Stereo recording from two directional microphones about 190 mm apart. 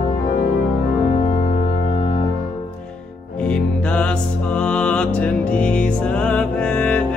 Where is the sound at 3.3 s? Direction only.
5° left (ahead or behind).